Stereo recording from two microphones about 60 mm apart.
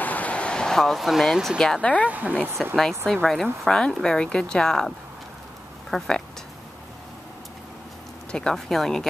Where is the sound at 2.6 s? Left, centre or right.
Centre.